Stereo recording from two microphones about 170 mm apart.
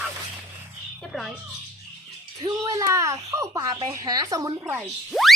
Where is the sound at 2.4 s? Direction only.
20° right (ahead or behind).